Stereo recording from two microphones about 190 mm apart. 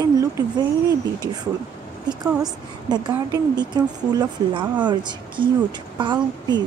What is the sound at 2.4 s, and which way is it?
A woman's voice, 20° right (ahead or behind).